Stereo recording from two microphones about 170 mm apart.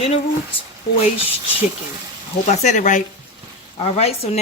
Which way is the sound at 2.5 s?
45° left (ahead or behind).